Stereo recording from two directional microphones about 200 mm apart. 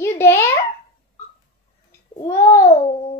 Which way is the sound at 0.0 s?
15° left (ahead or behind).